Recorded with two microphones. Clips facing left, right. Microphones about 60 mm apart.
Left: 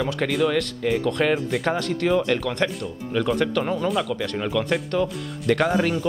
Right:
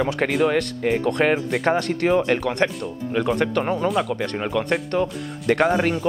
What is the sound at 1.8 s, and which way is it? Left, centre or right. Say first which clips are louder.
Speech: right 2 dB; right.